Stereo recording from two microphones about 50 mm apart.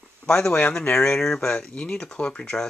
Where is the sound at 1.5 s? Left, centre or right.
Left.